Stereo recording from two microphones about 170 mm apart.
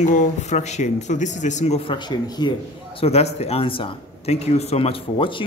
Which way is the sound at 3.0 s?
40° left (ahead or behind).